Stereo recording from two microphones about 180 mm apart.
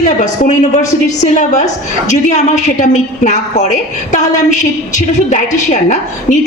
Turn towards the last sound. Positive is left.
turn(degrees=40)  # may be behind; listen again after turning